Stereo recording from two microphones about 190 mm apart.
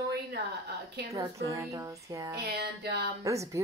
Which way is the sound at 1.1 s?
15° right (ahead or behind).